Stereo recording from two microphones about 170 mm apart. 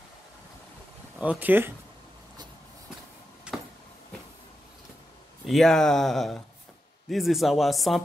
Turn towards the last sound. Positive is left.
turn(degrees=0)  # may be behind; listen again after turning